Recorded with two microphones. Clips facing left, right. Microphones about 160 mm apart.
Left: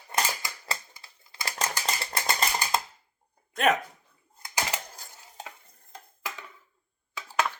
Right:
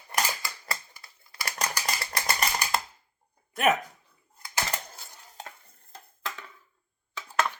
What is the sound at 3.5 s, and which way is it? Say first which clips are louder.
Speech: even; 5° right (ahead or behind).